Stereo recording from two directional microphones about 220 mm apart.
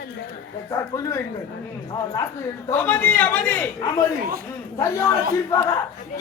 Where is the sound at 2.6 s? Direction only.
10° left (ahead or behind).